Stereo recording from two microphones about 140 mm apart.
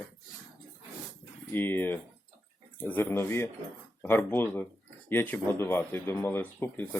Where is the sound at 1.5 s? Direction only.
15° left (ahead or behind).